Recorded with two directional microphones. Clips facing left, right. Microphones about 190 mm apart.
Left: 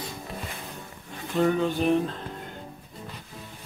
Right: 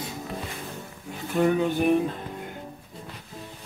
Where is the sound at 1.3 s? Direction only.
10° right (ahead or behind).